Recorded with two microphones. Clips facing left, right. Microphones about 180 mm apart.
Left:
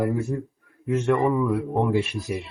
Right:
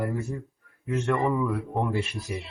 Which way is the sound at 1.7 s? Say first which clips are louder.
Left 5 dB; 15° left (ahead or behind).